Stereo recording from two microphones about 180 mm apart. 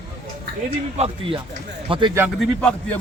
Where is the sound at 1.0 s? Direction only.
35° right (ahead or behind).